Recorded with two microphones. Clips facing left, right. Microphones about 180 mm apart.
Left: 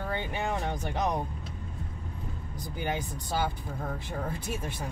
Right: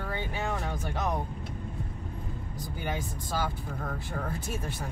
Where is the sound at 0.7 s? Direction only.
20° left (ahead or behind).